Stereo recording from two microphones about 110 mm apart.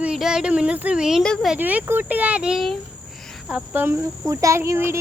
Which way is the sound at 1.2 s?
5° left (ahead or behind).